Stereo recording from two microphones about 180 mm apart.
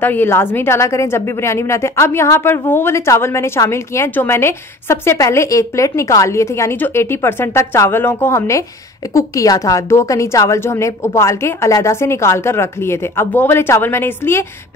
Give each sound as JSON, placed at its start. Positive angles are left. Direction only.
{"t": 0.0, "sound": "a woman's voice", "side_deg": 10}